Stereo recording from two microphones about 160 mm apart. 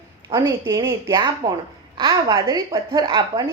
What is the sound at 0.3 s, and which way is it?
Speech, 15° right (ahead or behind).